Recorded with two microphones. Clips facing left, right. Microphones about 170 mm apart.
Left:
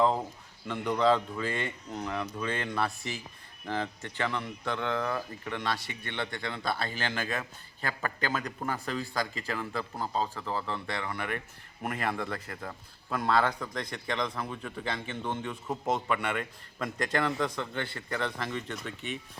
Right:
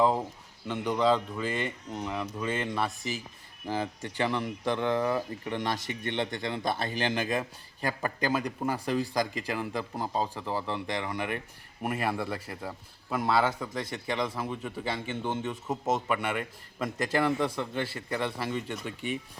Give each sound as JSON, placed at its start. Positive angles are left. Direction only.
{"t": 0.0, "sound": "speech", "side_deg": -5}
{"t": 15.3, "sound": "speech", "side_deg": -25}
{"t": 15.9, "sound": "speech", "side_deg": -5}